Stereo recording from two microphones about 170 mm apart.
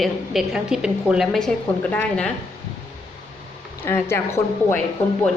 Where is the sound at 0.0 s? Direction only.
Centre (ahead or behind).